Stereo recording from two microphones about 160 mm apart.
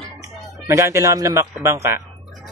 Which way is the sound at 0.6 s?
20° right (ahead or behind).